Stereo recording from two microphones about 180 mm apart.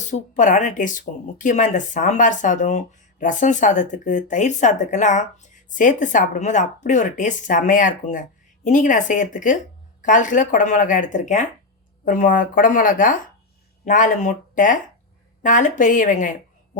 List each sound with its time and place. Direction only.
0.0 s speech: 45° left (ahead or behind)